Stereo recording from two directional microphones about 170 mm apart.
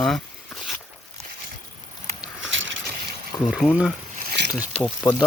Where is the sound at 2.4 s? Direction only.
90° right.